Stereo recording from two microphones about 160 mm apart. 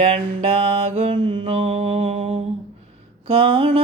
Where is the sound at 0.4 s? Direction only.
35° right (ahead or behind).